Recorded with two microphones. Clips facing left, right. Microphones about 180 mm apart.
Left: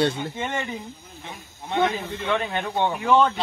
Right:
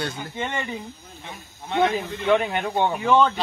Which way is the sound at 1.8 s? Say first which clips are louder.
Right 3 dB; 10° right (ahead or behind).